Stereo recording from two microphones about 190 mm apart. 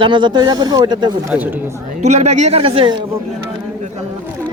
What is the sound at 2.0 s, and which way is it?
Speech, 35° right (ahead or behind).